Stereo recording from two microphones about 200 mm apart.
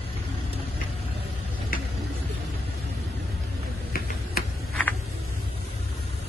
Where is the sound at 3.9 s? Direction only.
45° left (ahead or behind).